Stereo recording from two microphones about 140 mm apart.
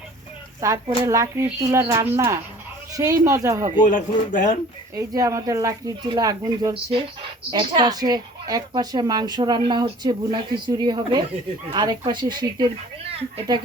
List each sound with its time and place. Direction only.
0.6 s speech: 20° right (ahead or behind)
3.8 s speech: 65° left (ahead or behind)
4.9 s speech: 25° right (ahead or behind)